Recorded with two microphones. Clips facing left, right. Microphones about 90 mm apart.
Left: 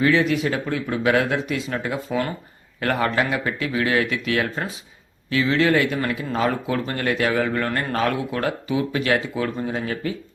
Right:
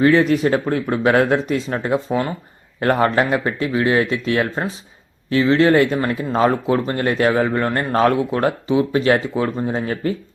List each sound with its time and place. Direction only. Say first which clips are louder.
0.0 s a man's voice: right 5 dB; 35° right (ahead or behind)